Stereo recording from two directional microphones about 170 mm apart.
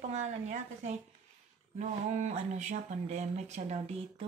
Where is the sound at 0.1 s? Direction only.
40° right (ahead or behind).